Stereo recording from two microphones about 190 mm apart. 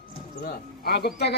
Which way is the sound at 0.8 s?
55° left (ahead or behind).